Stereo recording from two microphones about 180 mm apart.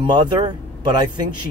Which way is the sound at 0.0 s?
25° right (ahead or behind).